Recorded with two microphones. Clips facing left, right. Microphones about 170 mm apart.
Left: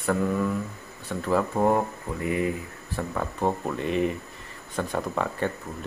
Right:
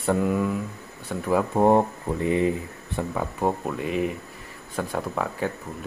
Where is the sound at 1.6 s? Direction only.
25° right (ahead or behind).